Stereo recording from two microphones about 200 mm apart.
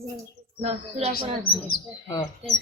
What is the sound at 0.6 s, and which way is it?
Speech, 30° right (ahead or behind).